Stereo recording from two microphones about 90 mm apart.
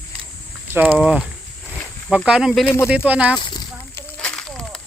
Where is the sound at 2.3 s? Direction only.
10° right (ahead or behind).